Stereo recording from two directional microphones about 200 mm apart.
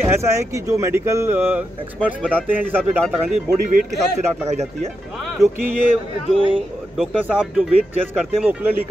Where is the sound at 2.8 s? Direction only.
5° left (ahead or behind).